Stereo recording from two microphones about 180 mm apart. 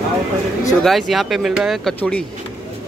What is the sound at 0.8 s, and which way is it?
Speech, centre (ahead or behind).